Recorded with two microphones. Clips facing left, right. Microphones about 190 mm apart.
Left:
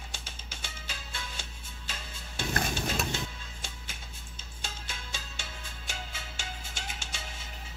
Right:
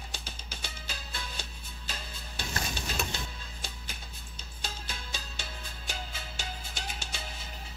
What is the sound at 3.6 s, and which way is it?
Music, 35° right (ahead or behind).